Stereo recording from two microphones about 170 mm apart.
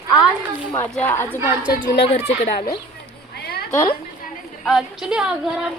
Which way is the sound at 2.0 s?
40° left (ahead or behind).